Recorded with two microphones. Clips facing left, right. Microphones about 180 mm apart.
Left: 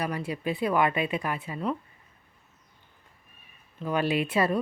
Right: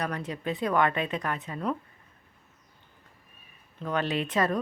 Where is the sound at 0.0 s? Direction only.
10° left (ahead or behind).